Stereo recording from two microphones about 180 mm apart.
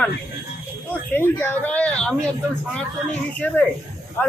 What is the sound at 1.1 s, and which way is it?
Speech, 10° left (ahead or behind).